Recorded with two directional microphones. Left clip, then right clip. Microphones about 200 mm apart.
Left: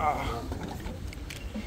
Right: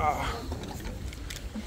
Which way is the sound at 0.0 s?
15° right (ahead or behind).